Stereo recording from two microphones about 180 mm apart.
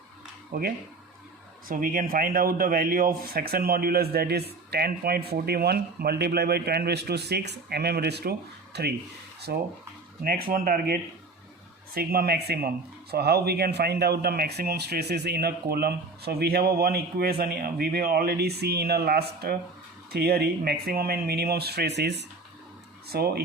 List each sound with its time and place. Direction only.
0.5 s speech: 60° right (ahead or behind)
11.9 s speech: 55° right (ahead or behind)